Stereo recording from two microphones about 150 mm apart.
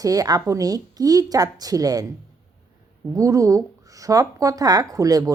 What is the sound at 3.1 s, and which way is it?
A woman's voice, 20° right (ahead or behind).